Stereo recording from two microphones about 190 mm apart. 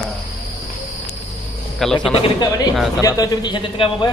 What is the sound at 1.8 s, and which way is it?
Speech, 5° left (ahead or behind).